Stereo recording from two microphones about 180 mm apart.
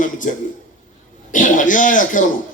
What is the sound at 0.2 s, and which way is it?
A man's voice, 45° left (ahead or behind).